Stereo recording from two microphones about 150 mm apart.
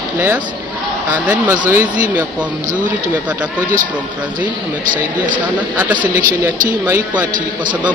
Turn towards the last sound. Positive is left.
turn(degrees=-15)  # may be behind; listen again after turning